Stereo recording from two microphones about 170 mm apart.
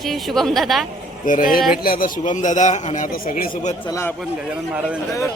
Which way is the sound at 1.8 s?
55° left (ahead or behind).